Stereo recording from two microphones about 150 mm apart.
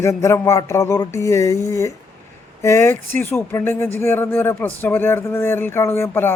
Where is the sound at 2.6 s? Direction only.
15° left (ahead or behind).